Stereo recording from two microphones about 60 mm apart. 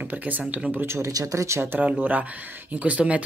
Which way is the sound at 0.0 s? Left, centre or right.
Right.